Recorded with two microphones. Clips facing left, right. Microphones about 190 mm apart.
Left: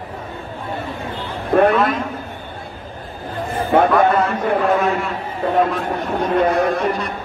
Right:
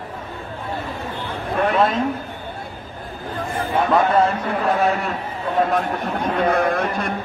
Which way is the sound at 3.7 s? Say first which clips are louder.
Left 7 dB; 60° left (ahead or behind).